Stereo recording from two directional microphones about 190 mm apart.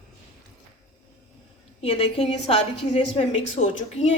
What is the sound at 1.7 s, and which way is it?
A woman's voice, 30° left (ahead or behind).